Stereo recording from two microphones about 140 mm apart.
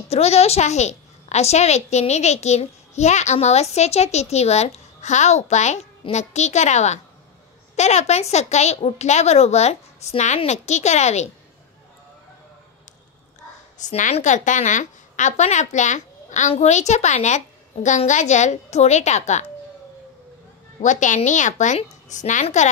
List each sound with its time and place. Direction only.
0.1 s a woman's voice: 50° left (ahead or behind)
13.8 s a woman's voice: 60° left (ahead or behind)
20.8 s a woman's voice: 60° left (ahead or behind)